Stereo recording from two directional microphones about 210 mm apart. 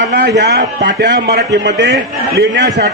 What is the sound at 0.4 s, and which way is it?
A man's voice, 50° right (ahead or behind).